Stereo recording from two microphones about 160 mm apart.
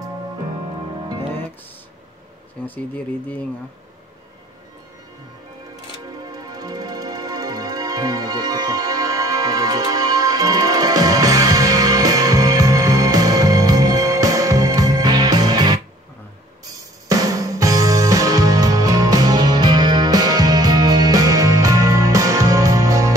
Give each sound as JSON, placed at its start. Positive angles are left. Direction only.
{"t": 2.6, "sound": "speech", "side_deg": 10}
{"t": 6.0, "sound": "music", "side_deg": -25}
{"t": 17.1, "sound": "music", "side_deg": -20}